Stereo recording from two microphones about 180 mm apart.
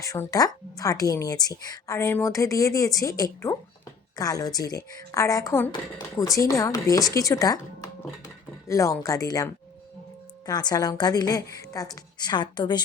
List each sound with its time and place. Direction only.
0.0 s speech: 20° left (ahead or behind)